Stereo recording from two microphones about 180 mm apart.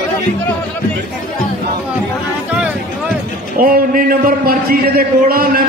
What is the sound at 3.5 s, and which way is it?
A man's voice, 55° right (ahead or behind).